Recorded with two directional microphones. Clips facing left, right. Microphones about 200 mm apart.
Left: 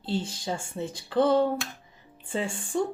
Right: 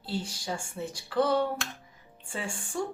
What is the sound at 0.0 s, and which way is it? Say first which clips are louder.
Speech: left 4 dB; 25° left (ahead or behind).